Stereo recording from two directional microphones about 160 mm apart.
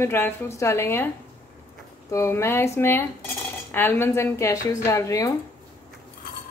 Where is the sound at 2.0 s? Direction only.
20° left (ahead or behind).